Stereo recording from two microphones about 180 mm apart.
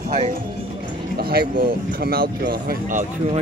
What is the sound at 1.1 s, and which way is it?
Speech, 60° right (ahead or behind).